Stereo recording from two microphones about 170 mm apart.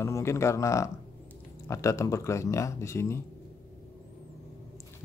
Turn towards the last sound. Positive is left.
turn(degrees=15)  # may be behind; listen again after turning